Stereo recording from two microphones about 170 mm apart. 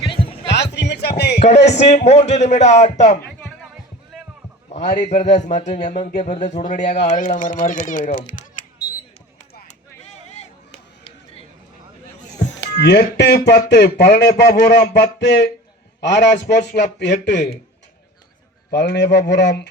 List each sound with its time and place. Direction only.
0.1 s music: 30° left (ahead or behind)
0.4 s music: 90° left; by 1.4 s 75° left (ahead or behind)
1.4 s speech: 40° left (ahead or behind)
4.7 s speech: 45° left (ahead or behind)
10.3 s chop: 40° left (ahead or behind)
12.8 s a man's voice: 75° left (ahead or behind); by 17.4 s 90° left
18.7 s a man's voice: 90° left